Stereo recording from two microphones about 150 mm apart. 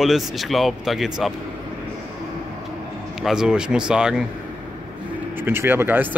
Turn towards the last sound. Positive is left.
turn(degrees=-15)  # may be behind; listen again after turning